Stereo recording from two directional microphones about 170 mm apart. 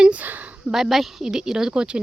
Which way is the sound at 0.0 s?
10° right (ahead or behind).